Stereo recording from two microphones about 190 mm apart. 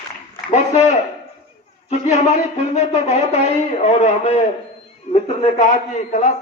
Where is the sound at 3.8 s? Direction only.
35° left (ahead or behind).